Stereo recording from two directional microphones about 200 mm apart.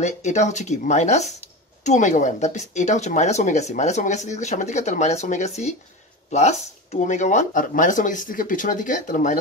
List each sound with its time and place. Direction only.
0.0 s speech: 35° left (ahead or behind)